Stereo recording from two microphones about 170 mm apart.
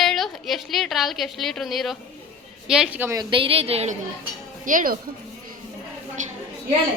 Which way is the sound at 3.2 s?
30° right (ahead or behind).